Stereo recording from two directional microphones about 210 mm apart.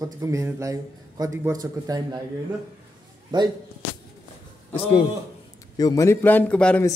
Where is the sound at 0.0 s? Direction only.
15° right (ahead or behind).